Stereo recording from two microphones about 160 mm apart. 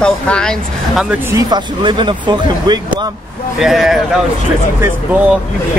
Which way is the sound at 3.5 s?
Centre (ahead or behind).